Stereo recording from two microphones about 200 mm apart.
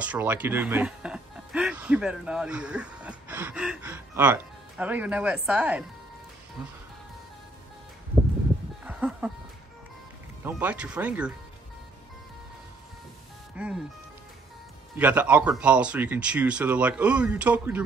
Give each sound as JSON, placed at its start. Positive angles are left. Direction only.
{"t": 0.0, "sound": "speech", "side_deg": -5}
{"t": 8.8, "sound": "music", "side_deg": -10}
{"t": 10.4, "sound": "speech", "side_deg": -10}
{"t": 13.6, "sound": "speech", "side_deg": -5}
{"t": 15.0, "sound": "speech", "side_deg": -10}